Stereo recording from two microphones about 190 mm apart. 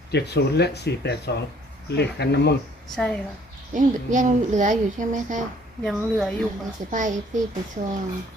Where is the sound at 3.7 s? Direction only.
40° right (ahead or behind).